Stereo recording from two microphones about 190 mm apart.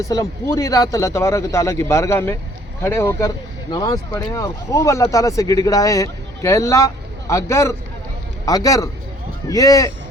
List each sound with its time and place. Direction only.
0.0 s speech: 15° left (ahead or behind)